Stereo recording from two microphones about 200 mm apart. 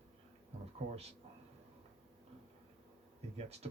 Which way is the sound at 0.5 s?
30° right (ahead or behind).